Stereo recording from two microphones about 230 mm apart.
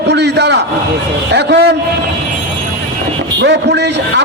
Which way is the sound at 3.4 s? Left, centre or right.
Right.